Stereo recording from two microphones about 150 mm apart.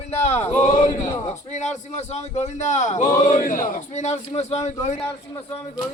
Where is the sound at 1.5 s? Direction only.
50° left (ahead or behind).